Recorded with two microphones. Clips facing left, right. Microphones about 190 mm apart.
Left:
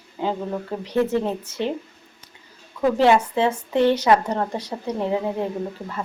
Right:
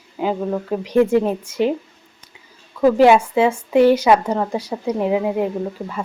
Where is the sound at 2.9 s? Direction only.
10° right (ahead or behind).